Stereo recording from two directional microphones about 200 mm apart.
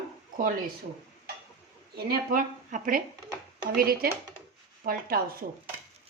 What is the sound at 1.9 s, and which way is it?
Speech, 50° right (ahead or behind).